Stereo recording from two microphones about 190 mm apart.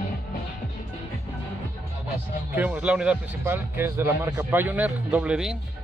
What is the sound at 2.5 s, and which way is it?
Speech, 10° right (ahead or behind).